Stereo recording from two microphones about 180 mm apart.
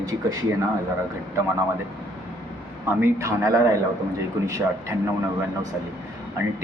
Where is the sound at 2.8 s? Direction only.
15° right (ahead or behind).